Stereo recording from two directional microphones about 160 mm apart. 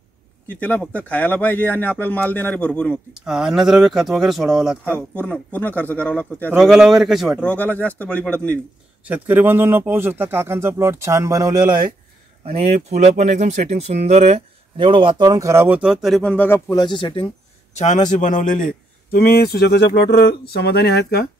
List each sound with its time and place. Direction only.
0.5 s speech: 10° left (ahead or behind)
3.1 s speech: centre (ahead or behind)
4.9 s speech: 10° left (ahead or behind)
6.5 s speech: 5° right (ahead or behind)
7.4 s speech: 10° left (ahead or behind)
9.0 s speech: 10° right (ahead or behind)
12.5 s speech: 45° right (ahead or behind); by 16.8 s 15° left (ahead or behind)
16.8 s speech: 30° left (ahead or behind)
17.7 s a man's voice: 50° left (ahead or behind); by 21.3 s 90° left